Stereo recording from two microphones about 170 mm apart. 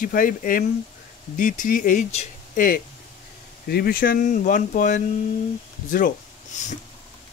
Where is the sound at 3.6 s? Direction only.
65° left (ahead or behind); by 6.8 s 45° left (ahead or behind).